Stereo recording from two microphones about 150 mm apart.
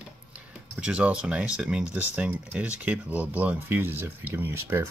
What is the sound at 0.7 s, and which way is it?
Speech, 5° right (ahead or behind).